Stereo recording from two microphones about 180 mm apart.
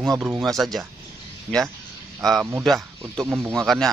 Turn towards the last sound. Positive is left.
turn(degrees=0)  # may be behind; listen again after turning